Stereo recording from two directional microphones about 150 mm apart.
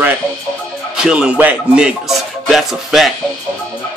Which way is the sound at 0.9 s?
5° right (ahead or behind).